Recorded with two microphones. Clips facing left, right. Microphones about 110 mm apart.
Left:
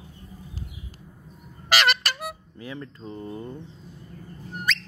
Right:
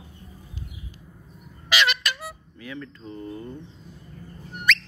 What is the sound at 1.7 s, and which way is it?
Music, 45° left (ahead or behind).